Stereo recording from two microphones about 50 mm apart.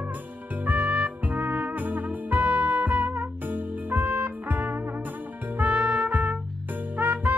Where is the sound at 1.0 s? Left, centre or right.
Right.